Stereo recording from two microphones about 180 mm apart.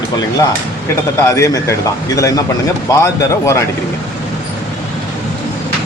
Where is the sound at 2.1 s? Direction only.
20° left (ahead or behind).